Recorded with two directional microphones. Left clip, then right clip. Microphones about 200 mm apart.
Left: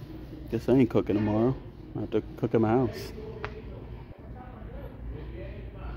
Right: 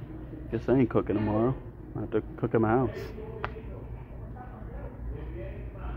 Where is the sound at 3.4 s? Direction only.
55° right (ahead or behind).